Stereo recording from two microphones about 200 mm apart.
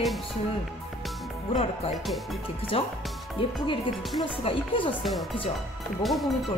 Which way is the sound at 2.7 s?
30° left (ahead or behind).